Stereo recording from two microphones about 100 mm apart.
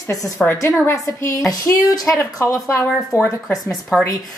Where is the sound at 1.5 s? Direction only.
40° left (ahead or behind).